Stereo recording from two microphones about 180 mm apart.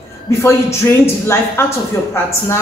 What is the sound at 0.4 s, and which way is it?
A woman's voice, 15° left (ahead or behind).